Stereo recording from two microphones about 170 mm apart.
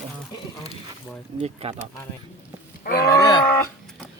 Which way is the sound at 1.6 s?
35° right (ahead or behind).